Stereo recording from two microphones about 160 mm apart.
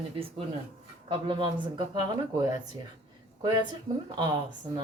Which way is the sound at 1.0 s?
30° right (ahead or behind).